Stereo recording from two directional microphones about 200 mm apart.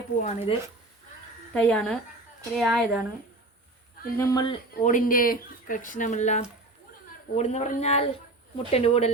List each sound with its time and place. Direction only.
0.2 s speech: 35° left (ahead or behind)
1.5 s a woman's voice: 5° left (ahead or behind)
4.2 s speech: 15° left (ahead or behind)
4.8 s speech: 40° left (ahead or behind)